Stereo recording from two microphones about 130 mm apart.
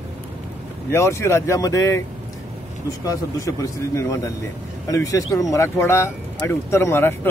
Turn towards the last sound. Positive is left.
turn(degrees=20)  # may be behind; listen again after turning